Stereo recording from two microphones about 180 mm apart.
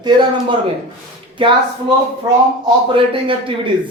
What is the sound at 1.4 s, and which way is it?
Speech, 25° right (ahead or behind).